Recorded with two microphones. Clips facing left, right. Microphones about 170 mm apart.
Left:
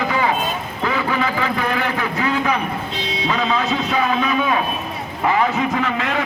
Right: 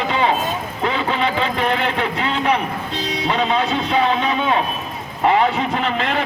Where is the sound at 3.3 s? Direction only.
30° right (ahead or behind).